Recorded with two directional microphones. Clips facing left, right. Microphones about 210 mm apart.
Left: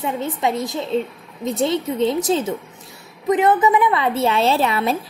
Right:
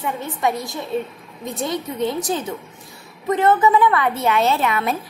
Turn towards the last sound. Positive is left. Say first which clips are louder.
# left 1 dB
turn(degrees=30)  # may be behind; listen again after turning